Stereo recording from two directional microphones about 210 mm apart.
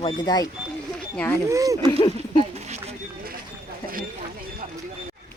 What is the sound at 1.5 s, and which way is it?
Speech, 15° right (ahead or behind).